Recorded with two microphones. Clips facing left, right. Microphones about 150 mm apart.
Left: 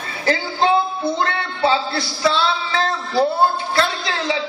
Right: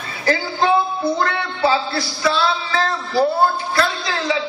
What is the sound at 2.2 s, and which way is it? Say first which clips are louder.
Music: left 1 dB; 25° left (ahead or behind).